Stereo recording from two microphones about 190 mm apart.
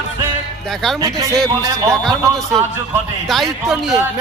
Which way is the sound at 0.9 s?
20° right (ahead or behind).